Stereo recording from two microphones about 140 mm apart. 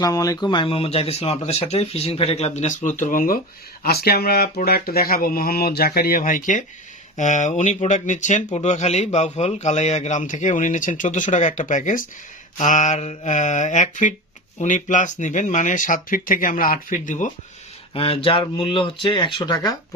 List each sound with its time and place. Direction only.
0.0 s speech: 25° left (ahead or behind); by 17.3 s 65° left (ahead or behind)
17.9 s speech: 40° left (ahead or behind)